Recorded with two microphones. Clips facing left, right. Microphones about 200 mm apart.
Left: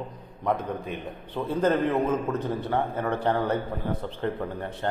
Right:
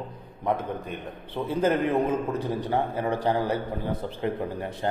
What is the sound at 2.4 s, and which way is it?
A man's voice, 15° right (ahead or behind).